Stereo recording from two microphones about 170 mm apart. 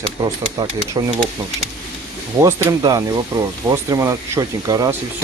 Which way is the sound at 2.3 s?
15° right (ahead or behind).